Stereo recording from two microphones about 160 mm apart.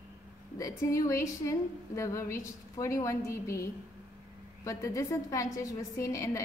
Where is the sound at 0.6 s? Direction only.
20° left (ahead or behind).